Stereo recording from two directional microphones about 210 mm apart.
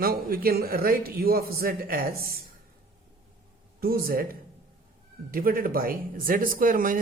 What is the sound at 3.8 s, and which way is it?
Speech, 45° right (ahead or behind).